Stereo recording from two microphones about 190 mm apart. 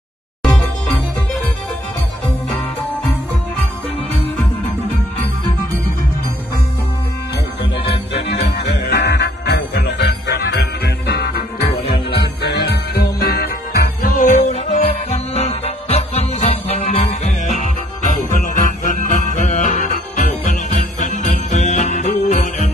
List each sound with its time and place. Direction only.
0.4 s music: centre (ahead or behind)
8.1 s music: 60° left (ahead or behind); by 20.5 s 40° left (ahead or behind)
21.0 s jingle bell: 40° left (ahead or behind)